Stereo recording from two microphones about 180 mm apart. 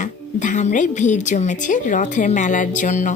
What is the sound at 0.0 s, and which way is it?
A woman's voice, 45° left (ahead or behind).